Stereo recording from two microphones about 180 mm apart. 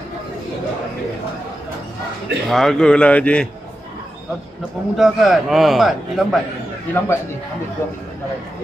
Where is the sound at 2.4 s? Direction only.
Centre (ahead or behind).